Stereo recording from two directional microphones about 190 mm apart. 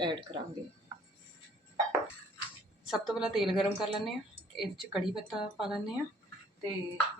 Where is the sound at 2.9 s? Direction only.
Centre (ahead or behind).